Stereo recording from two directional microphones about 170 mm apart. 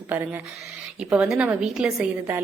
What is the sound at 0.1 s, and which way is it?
A woman's voice, 10° right (ahead or behind).